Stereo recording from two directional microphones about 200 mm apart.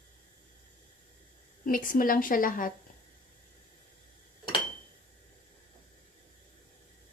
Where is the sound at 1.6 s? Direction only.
45° left (ahead or behind).